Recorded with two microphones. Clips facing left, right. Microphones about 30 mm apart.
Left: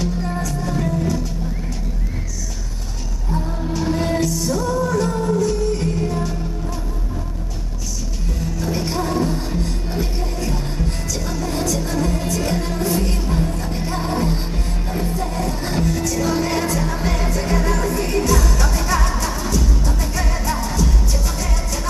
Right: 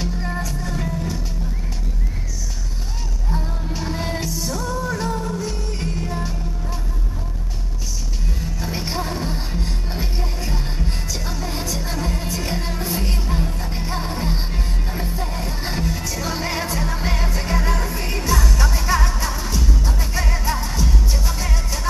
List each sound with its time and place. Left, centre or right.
0.7 s vehicle: centre
3.8 s music: centre
4.7 s music: centre
5.1 s music: centre
5.4 s music: centre
8.5 s music: centre